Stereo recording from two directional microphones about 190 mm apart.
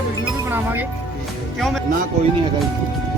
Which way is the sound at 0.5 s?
10° right (ahead or behind).